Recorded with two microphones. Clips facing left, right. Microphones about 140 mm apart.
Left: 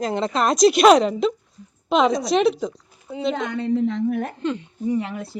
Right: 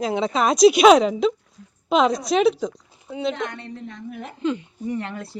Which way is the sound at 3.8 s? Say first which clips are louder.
Left 13 dB; 90° left.